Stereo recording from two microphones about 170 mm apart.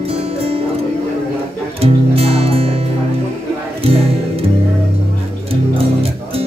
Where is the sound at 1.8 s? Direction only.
35° right (ahead or behind).